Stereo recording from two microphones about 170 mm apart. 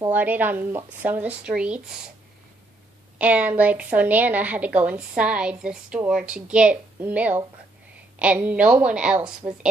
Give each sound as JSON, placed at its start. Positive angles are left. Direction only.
{"t": 0.1, "sound": "a woman's voice", "side_deg": -10}
{"t": 3.2, "sound": "a woman's voice", "side_deg": -10}